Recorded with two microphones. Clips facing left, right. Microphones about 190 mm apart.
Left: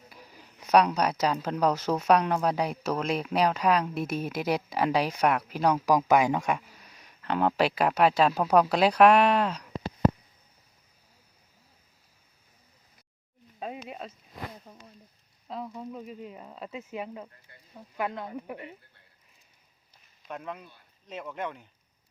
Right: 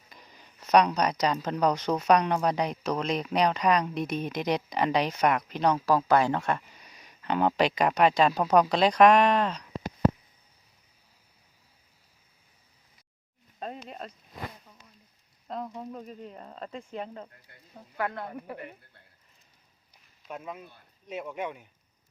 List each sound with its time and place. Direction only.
0.1 s speech: 10° left (ahead or behind)
13.6 s a sound: 5° left (ahead or behind)
14.6 s a sound: 40° left (ahead or behind)
15.4 s sizzle: centre (ahead or behind)
15.8 s speech: 5° left (ahead or behind)
20.2 s speech: 5° right (ahead or behind)